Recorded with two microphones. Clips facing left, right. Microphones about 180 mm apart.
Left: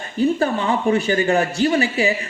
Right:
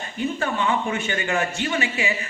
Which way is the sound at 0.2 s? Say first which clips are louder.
Left 6 dB; 35° left (ahead or behind).